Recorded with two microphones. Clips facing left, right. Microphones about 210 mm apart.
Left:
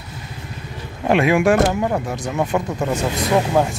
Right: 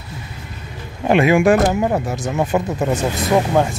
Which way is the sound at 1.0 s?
Centre (ahead or behind).